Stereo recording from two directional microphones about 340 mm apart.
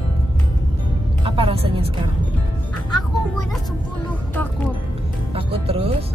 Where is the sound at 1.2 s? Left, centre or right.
Centre.